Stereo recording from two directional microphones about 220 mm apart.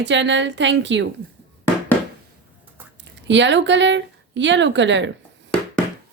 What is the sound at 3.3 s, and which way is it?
A woman's voice, 55° right (ahead or behind).